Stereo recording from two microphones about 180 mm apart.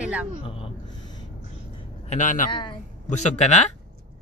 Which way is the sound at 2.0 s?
45° left (ahead or behind).